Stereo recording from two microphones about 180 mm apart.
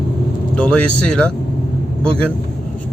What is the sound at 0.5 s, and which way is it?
A man's voice, 5° left (ahead or behind).